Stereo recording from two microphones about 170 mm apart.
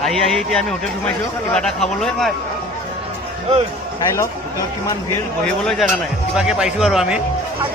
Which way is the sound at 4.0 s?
20° left (ahead or behind).